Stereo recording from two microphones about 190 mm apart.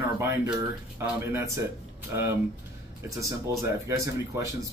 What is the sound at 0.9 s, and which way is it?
Speech, 15° right (ahead or behind).